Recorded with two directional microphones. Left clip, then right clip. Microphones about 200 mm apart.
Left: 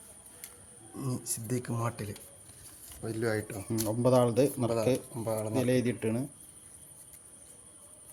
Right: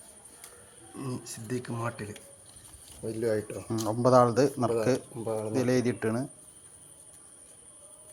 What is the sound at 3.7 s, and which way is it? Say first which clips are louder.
Speech: right 4 dB; centre (ahead or behind).